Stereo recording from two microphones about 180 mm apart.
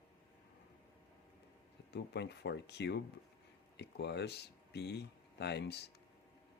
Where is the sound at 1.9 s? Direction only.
70° left (ahead or behind).